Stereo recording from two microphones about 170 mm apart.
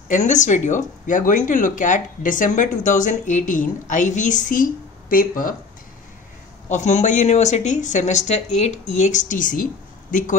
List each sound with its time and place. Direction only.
0.1 s speech: 45° left (ahead or behind)
6.7 s speech: 45° left (ahead or behind)